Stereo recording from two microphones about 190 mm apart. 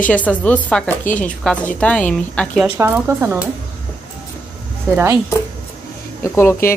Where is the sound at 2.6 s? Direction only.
10° right (ahead or behind).